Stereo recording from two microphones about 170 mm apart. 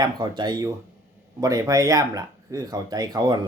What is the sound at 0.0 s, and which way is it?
Speech, 25° right (ahead or behind).